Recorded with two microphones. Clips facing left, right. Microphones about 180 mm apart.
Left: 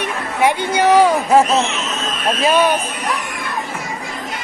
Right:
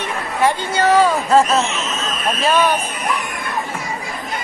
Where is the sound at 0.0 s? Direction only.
15° left (ahead or behind).